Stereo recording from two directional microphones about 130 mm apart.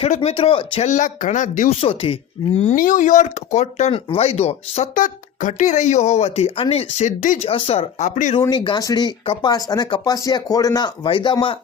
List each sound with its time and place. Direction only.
0.2 s speech: 45° left (ahead or behind)
0.8 s speech: 70° left (ahead or behind)
1.8 s speech: 45° left (ahead or behind)
2.6 s speech: 75° left (ahead or behind); by 4.9 s 55° left (ahead or behind)
4.9 s speech: 85° left; by 7.1 s 50° left (ahead or behind)
7.2 s speech: 80° left
7.4 s speech: 45° left (ahead or behind); by 8.4 s 70° left (ahead or behind)
8.4 s speech: 40° left (ahead or behind)
9.2 s speech: 45° left (ahead or behind)
9.5 s speech: 30° left (ahead or behind)